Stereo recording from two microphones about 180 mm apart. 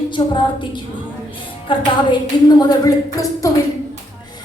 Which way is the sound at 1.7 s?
30° left (ahead or behind).